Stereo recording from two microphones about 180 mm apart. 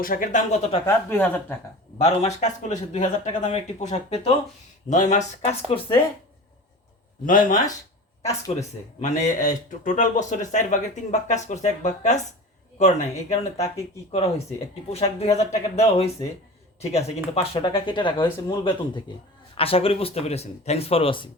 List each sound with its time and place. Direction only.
0.0 s speech: 50° left (ahead or behind)
0.9 s speech: 10° left (ahead or behind)
2.0 s speech: 40° left (ahead or behind)
7.3 s speech: 50° left (ahead or behind)
17.3 s speech: 30° left (ahead or behind)